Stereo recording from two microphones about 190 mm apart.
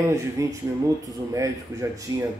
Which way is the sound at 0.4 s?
15° right (ahead or behind).